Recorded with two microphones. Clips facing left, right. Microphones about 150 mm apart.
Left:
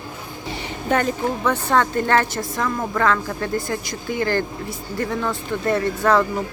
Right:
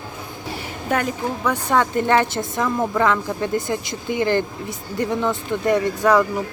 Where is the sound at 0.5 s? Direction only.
5° right (ahead or behind).